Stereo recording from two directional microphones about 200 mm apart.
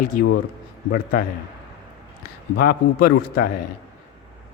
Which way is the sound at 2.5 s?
50° left (ahead or behind).